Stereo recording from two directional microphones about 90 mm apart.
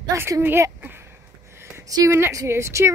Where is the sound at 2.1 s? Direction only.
30° right (ahead or behind).